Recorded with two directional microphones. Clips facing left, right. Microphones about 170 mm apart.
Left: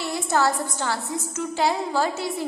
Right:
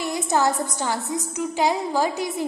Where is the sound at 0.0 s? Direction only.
20° right (ahead or behind).